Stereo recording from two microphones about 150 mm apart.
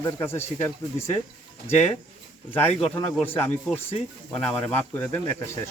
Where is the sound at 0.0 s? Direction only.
20° left (ahead or behind).